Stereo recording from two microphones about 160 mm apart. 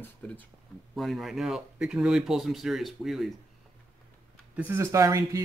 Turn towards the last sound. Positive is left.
turn(degrees=-20)  # may be behind; listen again after turning